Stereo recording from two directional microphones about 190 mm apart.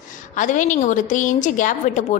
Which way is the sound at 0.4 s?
40° left (ahead or behind).